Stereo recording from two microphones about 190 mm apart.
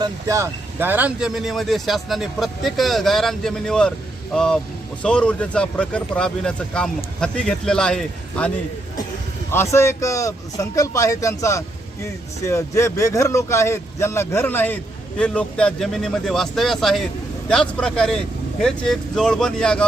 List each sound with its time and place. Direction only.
0.0 s speech: 15° right (ahead or behind); by 8.4 s 5° left (ahead or behind)
9.5 s speech: 15° left (ahead or behind)